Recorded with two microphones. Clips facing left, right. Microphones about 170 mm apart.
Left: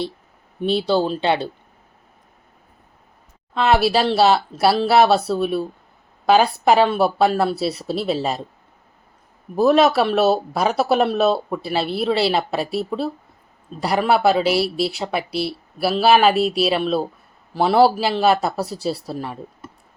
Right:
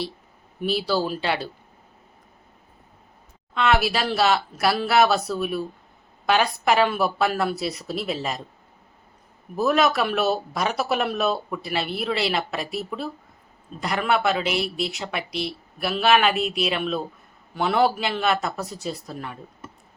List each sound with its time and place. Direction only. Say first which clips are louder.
0.6 s speech: left 5 dB; 25° left (ahead or behind)
3.5 s speech: left 5 dB; 30° left (ahead or behind)
9.6 s speech: left 6 dB; 30° left (ahead or behind)